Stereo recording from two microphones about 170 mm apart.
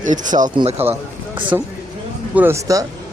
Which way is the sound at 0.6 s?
35° right (ahead or behind).